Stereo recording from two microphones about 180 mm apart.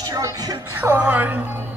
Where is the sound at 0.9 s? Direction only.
10° right (ahead or behind).